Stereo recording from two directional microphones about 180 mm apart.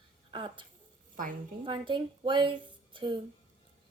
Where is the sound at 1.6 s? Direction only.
25° right (ahead or behind).